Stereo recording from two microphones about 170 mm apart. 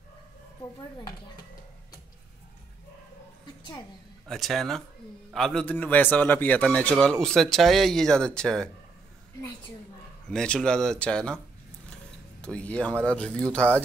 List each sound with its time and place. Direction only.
0.6 s speech: 25° left (ahead or behind)
4.3 s a man's voice: centre (ahead or behind)
10.3 s a man's voice: 5° left (ahead or behind)
12.4 s speech: 5° left (ahead or behind)